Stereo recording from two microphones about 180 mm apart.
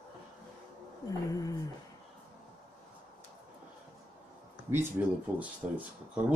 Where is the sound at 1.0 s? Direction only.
20° left (ahead or behind).